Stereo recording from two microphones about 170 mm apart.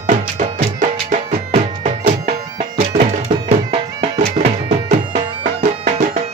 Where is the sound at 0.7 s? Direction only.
45° right (ahead or behind).